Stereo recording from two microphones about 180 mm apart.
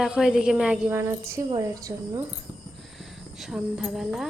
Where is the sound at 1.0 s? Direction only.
15° right (ahead or behind).